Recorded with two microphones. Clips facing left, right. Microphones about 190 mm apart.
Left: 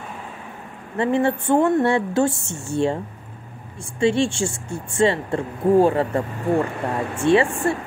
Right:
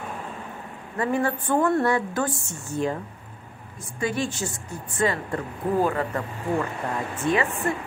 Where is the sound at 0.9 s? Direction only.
25° left (ahead or behind).